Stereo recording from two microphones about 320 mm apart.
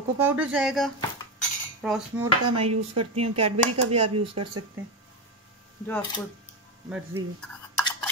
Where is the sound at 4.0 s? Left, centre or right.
Right.